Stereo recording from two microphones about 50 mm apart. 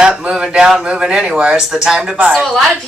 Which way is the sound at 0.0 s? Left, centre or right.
Centre.